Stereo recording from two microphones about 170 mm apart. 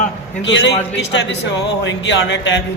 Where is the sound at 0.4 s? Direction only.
90° left.